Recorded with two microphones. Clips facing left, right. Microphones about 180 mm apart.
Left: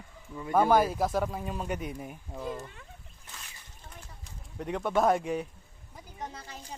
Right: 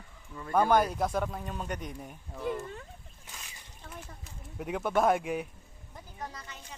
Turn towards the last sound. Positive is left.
turn(degrees=35)  # may be behind; listen again after turning